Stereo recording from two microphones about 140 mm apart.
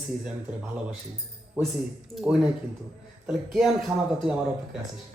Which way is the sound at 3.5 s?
5° right (ahead or behind).